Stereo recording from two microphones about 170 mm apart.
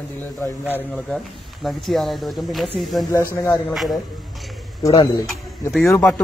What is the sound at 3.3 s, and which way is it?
Speech, 20° left (ahead or behind).